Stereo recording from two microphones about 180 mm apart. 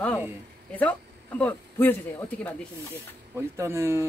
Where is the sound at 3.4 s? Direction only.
15° right (ahead or behind).